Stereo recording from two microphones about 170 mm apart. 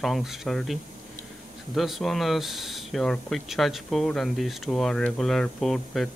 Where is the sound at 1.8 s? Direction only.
Centre (ahead or behind).